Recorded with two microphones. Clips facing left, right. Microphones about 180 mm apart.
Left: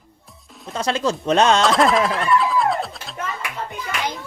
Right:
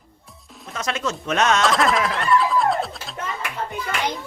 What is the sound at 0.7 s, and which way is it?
Speech, 30° left (ahead or behind).